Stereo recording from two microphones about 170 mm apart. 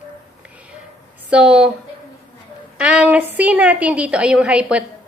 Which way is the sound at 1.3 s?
5° right (ahead or behind).